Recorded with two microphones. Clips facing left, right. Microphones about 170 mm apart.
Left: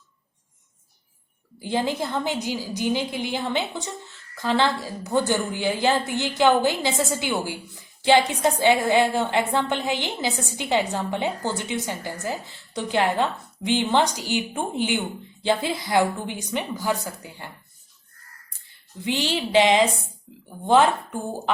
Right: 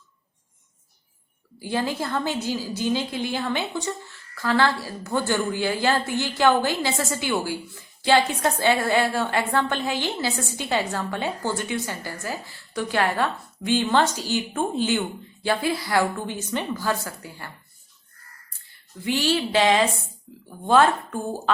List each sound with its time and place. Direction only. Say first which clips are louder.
1.5 s a woman's voice: left 1 dB; 20° left (ahead or behind)
18.9 s a woman's voice: right 2 dB; 20° left (ahead or behind)